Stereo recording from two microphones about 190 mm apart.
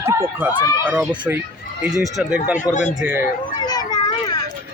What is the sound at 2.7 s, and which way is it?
Speech, 40° left (ahead or behind).